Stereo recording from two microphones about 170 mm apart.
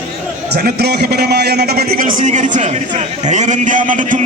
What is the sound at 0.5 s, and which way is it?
A man's voice, 65° right (ahead or behind).